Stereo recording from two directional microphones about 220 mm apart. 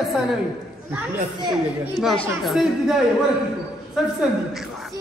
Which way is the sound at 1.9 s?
Centre (ahead or behind).